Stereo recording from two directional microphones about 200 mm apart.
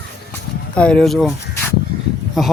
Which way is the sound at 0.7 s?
5° left (ahead or behind).